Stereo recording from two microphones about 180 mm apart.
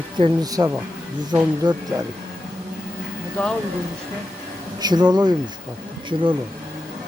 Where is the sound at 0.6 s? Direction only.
20° right (ahead or behind).